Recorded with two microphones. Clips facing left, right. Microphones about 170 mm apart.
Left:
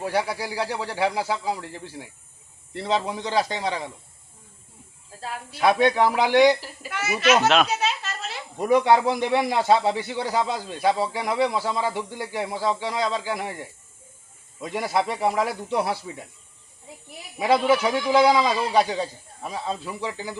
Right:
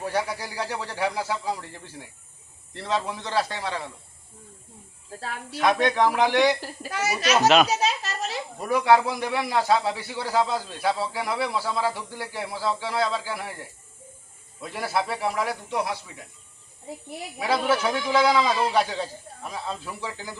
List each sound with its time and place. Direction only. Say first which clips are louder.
0.0 s speech: left 2 dB; 10° left (ahead or behind)
5.5 s speech: left 2 dB; 10° left (ahead or behind)
6.8 s a child's voice: left 3 dB; 40° right (ahead or behind)
7.4 s a child's voice: right 2 dB; centre (ahead or behind)
7.7 s a sound: right 1 dB; 35° right (ahead or behind)
8.5 s a man's voice: left 2 dB; 20° left (ahead or behind)
14.6 s a man's voice: left 3 dB; 20° left (ahead or behind)
17.5 s speech: left 4 dB; 15° left (ahead or behind)